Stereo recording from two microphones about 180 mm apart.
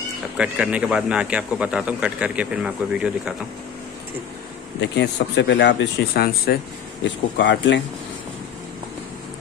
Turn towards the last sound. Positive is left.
turn(degrees=80)